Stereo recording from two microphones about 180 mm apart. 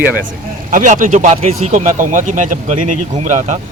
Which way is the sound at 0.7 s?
45° right (ahead or behind).